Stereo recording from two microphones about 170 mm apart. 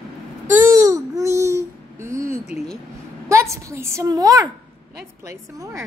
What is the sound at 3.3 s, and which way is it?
A woman's voice, 15° right (ahead or behind).